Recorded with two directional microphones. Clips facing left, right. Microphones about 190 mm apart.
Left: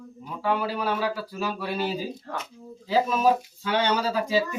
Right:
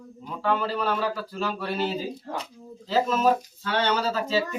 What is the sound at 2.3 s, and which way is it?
Speech, 15° right (ahead or behind).